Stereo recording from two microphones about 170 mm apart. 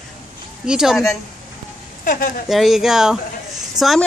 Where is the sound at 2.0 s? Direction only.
55° left (ahead or behind).